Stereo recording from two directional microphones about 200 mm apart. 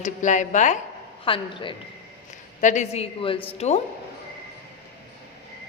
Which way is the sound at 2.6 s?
35° left (ahead or behind).